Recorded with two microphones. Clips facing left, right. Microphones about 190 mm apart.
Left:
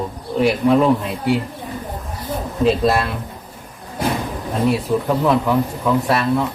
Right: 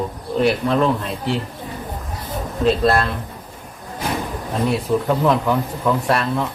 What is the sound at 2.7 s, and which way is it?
Speech, 5° left (ahead or behind).